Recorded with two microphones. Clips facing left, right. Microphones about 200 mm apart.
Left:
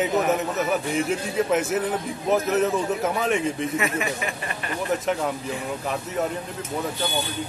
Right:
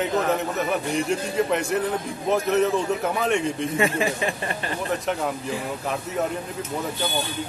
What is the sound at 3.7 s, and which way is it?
Speech, 30° right (ahead or behind).